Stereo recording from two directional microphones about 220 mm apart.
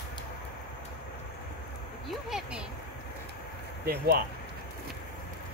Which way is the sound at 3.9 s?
45° right (ahead or behind).